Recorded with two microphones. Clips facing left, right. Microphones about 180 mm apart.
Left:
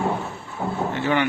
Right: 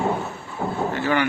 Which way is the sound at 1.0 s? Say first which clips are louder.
Even; 20° left (ahead or behind).